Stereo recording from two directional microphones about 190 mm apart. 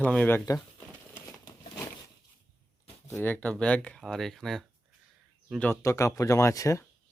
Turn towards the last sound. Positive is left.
turn(degrees=15)  # may be behind; listen again after turning